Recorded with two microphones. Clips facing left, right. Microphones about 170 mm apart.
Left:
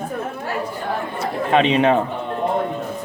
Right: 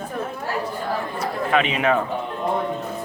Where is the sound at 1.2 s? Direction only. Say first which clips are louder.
Left 4 dB; 30° left (ahead or behind).